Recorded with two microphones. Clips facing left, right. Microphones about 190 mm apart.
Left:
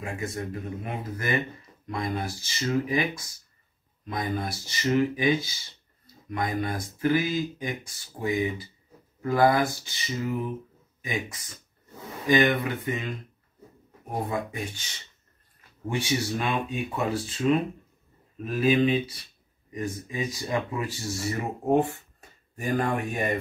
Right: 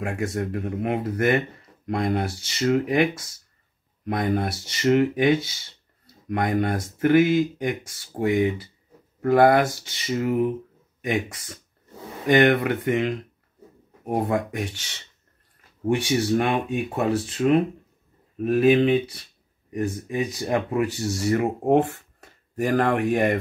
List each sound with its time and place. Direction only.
0.0 s speech: 70° right (ahead or behind)
15.9 s speech: 60° right (ahead or behind); by 22.0 s 85° right
22.6 s speech: 70° right (ahead or behind)